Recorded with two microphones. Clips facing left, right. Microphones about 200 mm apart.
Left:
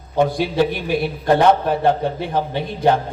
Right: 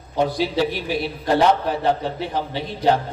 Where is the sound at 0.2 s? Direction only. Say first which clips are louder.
Left 3 dB; 50° left (ahead or behind).